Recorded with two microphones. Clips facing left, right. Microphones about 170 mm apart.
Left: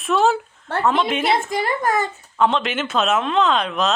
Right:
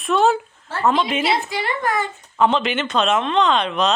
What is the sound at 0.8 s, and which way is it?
Speech, centre (ahead or behind).